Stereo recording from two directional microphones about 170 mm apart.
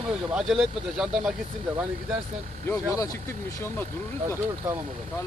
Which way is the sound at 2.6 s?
20° left (ahead or behind).